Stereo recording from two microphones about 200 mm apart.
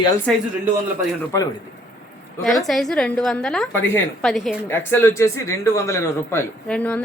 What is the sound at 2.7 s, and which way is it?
A woman's voice, centre (ahead or behind).